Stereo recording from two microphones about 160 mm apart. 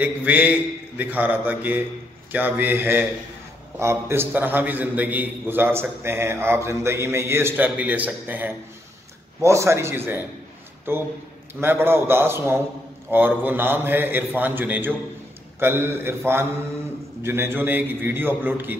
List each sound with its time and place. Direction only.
0.0 s a man's voice: 10° right (ahead or behind)